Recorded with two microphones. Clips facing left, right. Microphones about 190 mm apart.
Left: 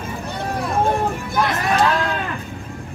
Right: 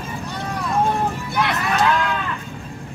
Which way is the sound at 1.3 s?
40° left (ahead or behind).